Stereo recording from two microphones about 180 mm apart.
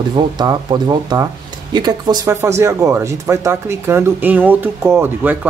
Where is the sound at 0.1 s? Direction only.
25° right (ahead or behind).